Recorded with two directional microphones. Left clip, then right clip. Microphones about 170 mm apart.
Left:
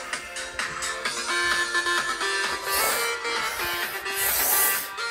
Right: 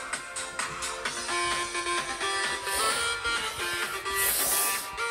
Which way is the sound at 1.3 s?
15° left (ahead or behind).